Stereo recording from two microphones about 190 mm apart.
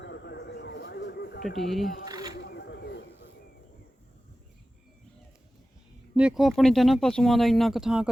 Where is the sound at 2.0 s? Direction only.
20° right (ahead or behind).